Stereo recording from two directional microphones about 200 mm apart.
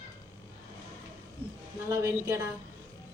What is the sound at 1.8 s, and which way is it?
Speech, 15° right (ahead or behind).